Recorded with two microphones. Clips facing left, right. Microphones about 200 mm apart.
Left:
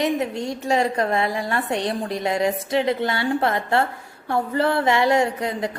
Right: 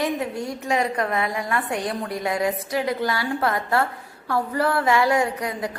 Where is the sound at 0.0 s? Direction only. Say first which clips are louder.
Left 3 dB; 20° left (ahead or behind).